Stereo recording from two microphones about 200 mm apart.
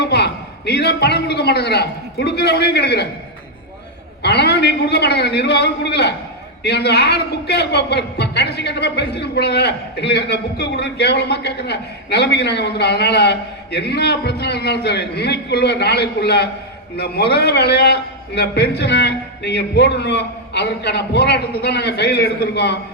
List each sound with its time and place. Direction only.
0.0 s a man's voice: 55° left (ahead or behind)
4.2 s a man's voice: 55° left (ahead or behind)